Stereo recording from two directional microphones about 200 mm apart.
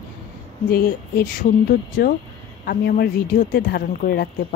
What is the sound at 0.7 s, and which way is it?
Speech, 45° left (ahead or behind).